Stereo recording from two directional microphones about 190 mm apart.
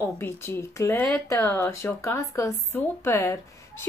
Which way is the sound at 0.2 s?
10° left (ahead or behind).